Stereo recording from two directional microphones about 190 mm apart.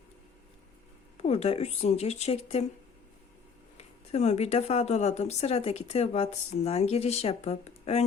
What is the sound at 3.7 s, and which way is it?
Speech, 35° left (ahead or behind).